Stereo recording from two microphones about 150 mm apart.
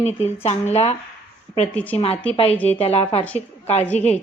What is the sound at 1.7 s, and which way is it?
Speech, 10° left (ahead or behind).